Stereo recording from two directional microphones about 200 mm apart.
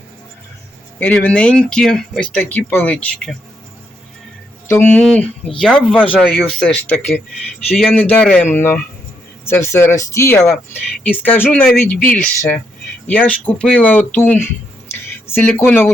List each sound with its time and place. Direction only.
0.9 s speech: 10° left (ahead or behind)
4.7 s speech: 10° left (ahead or behind)
10.4 s speech: centre (ahead or behind)
11.9 s speech: 45° left (ahead or behind)
12.2 s speech: 10° left (ahead or behind)